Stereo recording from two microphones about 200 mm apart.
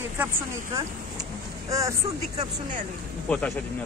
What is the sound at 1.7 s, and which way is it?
Speech, 15° right (ahead or behind).